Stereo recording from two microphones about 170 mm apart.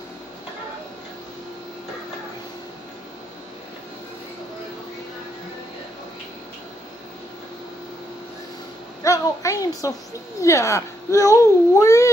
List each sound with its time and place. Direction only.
9.0 s a woman's voice: 20° left (ahead or behind)